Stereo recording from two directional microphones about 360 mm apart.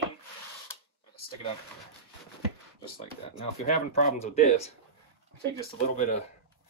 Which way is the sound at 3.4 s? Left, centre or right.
Centre.